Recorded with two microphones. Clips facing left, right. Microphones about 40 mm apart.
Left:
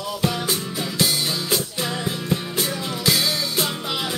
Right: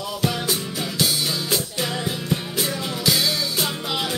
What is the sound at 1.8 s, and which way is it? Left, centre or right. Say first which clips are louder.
Music: even; centre.